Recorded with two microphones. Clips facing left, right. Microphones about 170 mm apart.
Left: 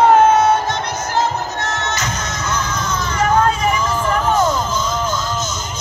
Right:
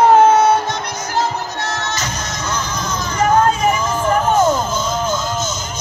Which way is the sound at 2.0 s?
40° right (ahead or behind).